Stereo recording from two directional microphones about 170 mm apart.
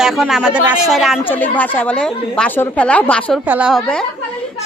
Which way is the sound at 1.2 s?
10° left (ahead or behind).